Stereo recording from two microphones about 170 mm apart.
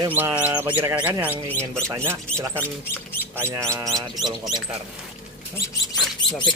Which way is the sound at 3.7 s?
20° right (ahead or behind).